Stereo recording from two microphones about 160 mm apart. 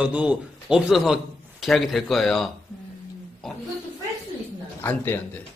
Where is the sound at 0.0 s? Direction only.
10° right (ahead or behind).